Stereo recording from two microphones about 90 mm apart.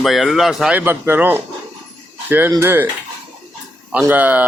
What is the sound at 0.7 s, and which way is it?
Speech, 25° right (ahead or behind).